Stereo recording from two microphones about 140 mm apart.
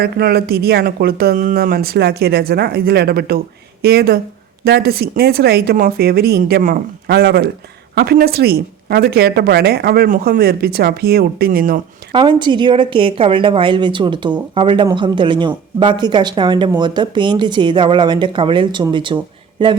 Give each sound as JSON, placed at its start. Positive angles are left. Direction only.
{"t": 0.9, "sound": "a woman's voice", "side_deg": -90}
{"t": 4.6, "sound": "a woman's voice", "side_deg": -90}
{"t": 12.1, "sound": "speech", "side_deg": -35}